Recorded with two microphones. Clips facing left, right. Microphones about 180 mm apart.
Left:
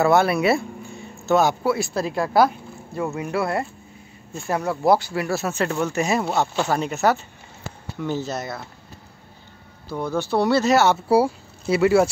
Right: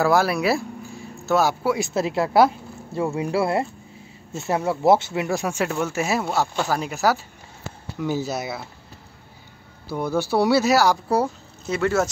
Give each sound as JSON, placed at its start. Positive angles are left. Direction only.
{"t": 0.0, "sound": "speech", "side_deg": 0}
{"t": 2.0, "sound": "speech", "side_deg": -25}
{"t": 8.3, "sound": "speech", "side_deg": -10}
{"t": 9.8, "sound": "speech", "side_deg": -10}